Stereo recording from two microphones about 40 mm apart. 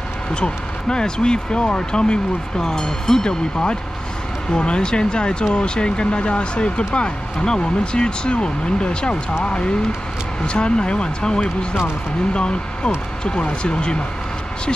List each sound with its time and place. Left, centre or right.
0.3 s speech: left